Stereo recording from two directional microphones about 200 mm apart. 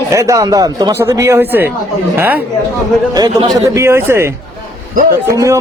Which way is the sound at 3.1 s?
20° right (ahead or behind).